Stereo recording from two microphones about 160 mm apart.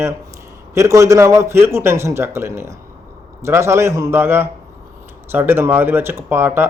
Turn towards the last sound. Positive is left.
turn(degrees=-15)  # may be behind; listen again after turning